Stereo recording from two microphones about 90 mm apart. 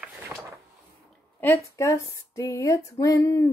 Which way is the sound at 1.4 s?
35° left (ahead or behind).